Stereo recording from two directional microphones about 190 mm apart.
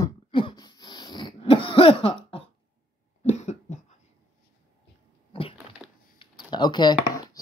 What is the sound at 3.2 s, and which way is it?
Cough, 35° left (ahead or behind).